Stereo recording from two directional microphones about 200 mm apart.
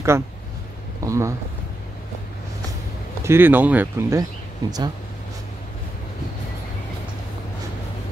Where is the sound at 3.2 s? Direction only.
10° right (ahead or behind).